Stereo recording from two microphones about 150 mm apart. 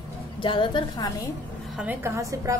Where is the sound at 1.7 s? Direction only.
15° right (ahead or behind).